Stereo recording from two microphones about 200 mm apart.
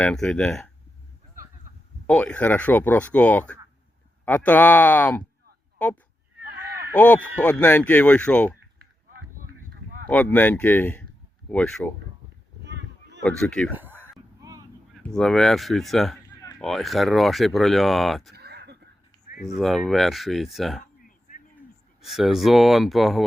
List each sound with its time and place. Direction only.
0.0 s speech: 5° left (ahead or behind)
2.0 s speech: 5° left (ahead or behind)
10.1 s speech: 5° left (ahead or behind)
12.6 s a sound: 60° right (ahead or behind)
13.2 s speech: 5° left (ahead or behind)
14.4 s vehicle: 15° right (ahead or behind)
14.9 s speech: 5° left (ahead or behind)
18.3 s a sound: 55° right (ahead or behind)
19.5 s speech: centre (ahead or behind)
22.0 s speech: centre (ahead or behind)